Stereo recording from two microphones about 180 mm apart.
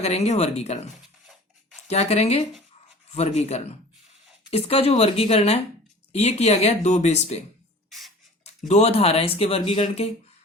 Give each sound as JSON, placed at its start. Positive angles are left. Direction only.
{"t": 0.0, "sound": "speech", "side_deg": 35}
{"t": 1.9, "sound": "speech", "side_deg": 35}
{"t": 7.9, "sound": "a sound", "side_deg": 0}
{"t": 8.6, "sound": "speech", "side_deg": 35}